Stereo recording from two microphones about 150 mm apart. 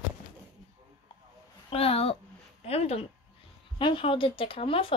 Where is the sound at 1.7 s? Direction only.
40° left (ahead or behind).